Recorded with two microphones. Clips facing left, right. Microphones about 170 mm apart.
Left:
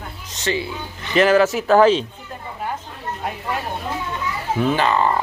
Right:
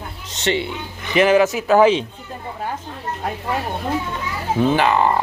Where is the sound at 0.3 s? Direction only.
25° right (ahead or behind).